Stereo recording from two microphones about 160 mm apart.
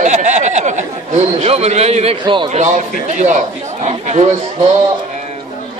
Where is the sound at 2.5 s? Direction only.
45° right (ahead or behind).